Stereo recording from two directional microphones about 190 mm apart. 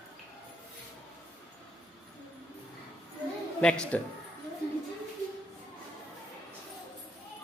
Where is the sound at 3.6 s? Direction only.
5° left (ahead or behind).